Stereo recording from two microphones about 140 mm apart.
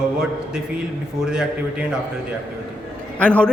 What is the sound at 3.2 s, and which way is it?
Speech, 10° left (ahead or behind).